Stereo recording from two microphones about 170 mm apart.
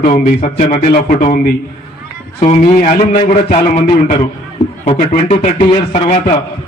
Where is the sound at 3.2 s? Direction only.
40° left (ahead or behind).